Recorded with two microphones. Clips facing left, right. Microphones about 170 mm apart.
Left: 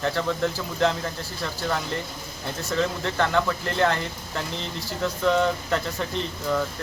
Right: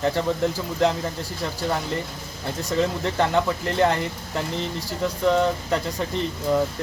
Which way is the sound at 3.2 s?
15° right (ahead or behind).